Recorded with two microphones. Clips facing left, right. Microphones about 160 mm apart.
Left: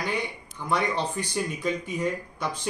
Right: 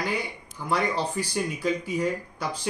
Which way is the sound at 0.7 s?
5° right (ahead or behind).